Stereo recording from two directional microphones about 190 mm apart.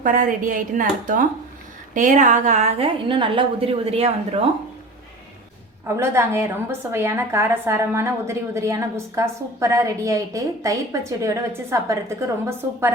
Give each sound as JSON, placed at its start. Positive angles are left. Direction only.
{"t": 0.0, "sound": "a woman's voice", "side_deg": -45}
{"t": 6.0, "sound": "a woman's voice", "side_deg": -15}